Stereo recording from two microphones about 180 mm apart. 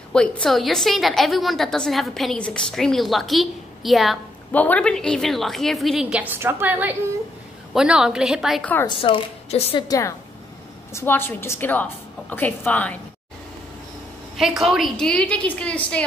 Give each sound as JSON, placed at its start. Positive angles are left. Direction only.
{"t": 0.1, "sound": "a woman's voice", "side_deg": 5}
{"t": 8.8, "sound": "a woman's voice", "side_deg": 30}
{"t": 9.8, "sound": "a woman's voice", "side_deg": 20}
{"t": 14.3, "sound": "a woman's voice", "side_deg": 0}